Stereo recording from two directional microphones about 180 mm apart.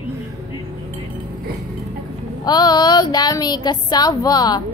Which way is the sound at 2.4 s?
25° left (ahead or behind).